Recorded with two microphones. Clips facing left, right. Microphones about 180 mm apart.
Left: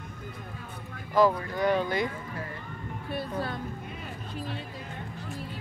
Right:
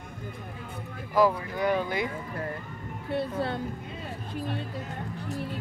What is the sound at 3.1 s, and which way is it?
Speech, 25° right (ahead or behind).